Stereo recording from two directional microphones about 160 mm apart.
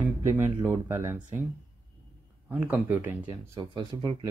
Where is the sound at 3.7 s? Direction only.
30° right (ahead or behind).